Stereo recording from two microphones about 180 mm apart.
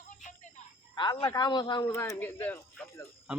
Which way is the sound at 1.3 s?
25° left (ahead or behind).